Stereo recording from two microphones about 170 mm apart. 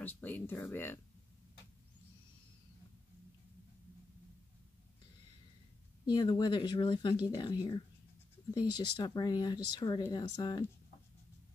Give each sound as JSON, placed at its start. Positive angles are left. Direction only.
{"t": 0.0, "sound": "speech", "side_deg": 10}
{"t": 6.0, "sound": "speech", "side_deg": 25}